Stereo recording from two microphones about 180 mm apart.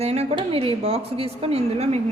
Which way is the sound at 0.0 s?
35° right (ahead or behind).